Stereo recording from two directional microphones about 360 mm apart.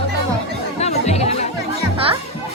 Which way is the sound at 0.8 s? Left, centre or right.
Centre.